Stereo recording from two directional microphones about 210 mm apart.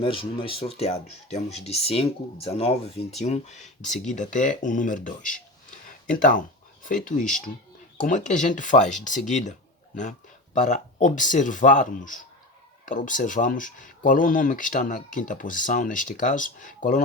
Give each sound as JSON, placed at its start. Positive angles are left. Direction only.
{"t": 0.0, "sound": "speech", "side_deg": 25}